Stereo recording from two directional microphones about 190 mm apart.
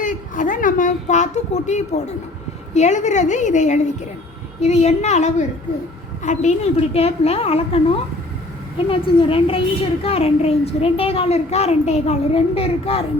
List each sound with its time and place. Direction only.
0.0 s a woman's voice: 45° left (ahead or behind)